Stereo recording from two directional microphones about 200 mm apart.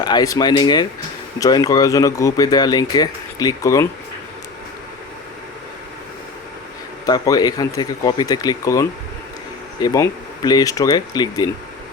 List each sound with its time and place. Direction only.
0.0 s speech: 20° left (ahead or behind)
7.0 s speech: 20° left (ahead or behind)